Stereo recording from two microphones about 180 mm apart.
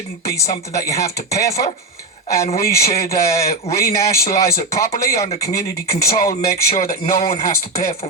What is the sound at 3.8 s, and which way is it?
Speech, 15° left (ahead or behind).